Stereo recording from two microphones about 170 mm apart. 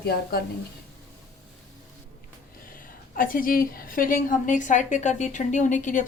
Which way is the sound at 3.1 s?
55° left (ahead or behind).